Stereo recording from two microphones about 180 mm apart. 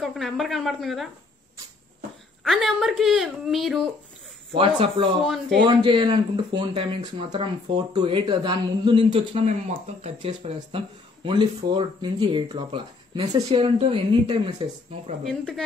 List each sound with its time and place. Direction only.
0.0 s a woman's voice: centre (ahead or behind)
2.4 s a woman's voice: centre (ahead or behind)
4.6 s speech: 30° right (ahead or behind)
5.2 s a woman's voice: centre (ahead or behind)
5.7 s speech: 30° right (ahead or behind)
15.2 s a woman's voice: 5° left (ahead or behind)